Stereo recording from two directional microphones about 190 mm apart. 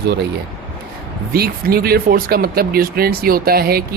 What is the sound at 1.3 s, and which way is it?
Speech, 55° right (ahead or behind).